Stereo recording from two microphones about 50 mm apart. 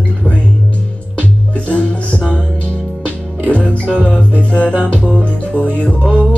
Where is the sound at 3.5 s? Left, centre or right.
Left.